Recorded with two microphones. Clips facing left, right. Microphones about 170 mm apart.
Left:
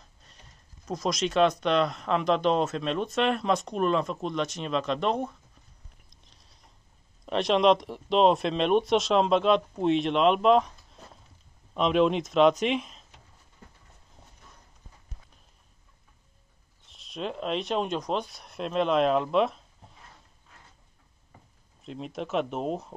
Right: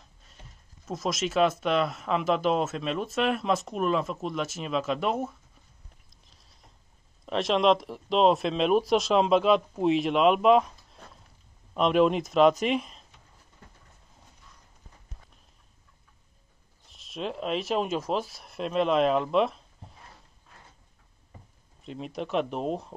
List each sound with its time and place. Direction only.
0.8 s speech: centre (ahead or behind)
6.2 s a sound: centre (ahead or behind)
7.2 s speech: centre (ahead or behind)
16.8 s speech: centre (ahead or behind)
21.8 s speech: centre (ahead or behind)